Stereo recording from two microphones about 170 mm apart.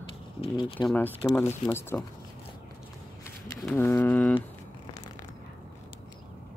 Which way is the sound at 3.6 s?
10° left (ahead or behind).